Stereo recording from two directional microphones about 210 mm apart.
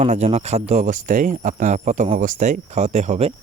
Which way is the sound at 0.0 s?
35° right (ahead or behind).